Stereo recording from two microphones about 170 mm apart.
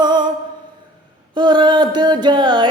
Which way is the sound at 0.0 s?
25° right (ahead or behind).